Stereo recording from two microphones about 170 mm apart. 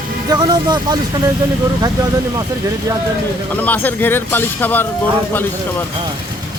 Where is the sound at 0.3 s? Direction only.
25° right (ahead or behind).